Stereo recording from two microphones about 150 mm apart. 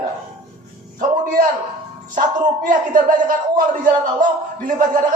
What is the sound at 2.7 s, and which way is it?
Speech, 60° right (ahead or behind).